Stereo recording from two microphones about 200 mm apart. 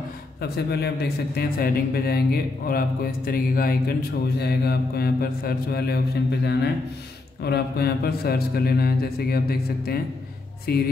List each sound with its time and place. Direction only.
0.4 s a man's voice: 55° left (ahead or behind)